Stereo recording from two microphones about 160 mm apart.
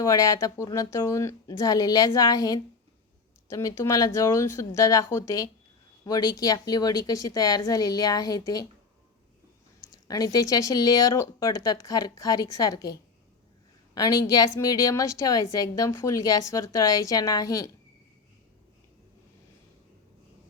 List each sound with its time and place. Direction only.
0.0 s a woman's voice: 20° left (ahead or behind)
10.1 s a woman's voice: 25° left (ahead or behind)